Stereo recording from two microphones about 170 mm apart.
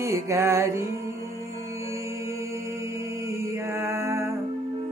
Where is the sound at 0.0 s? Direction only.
15° right (ahead or behind).